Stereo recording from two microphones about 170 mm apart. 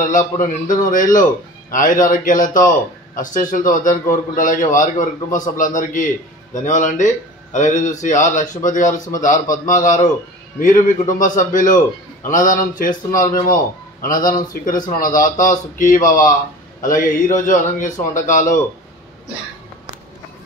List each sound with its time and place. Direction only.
0.4 s a man's voice: 50° left (ahead or behind)